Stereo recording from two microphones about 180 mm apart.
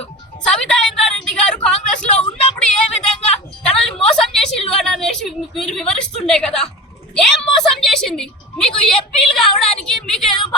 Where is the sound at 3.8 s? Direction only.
Centre (ahead or behind).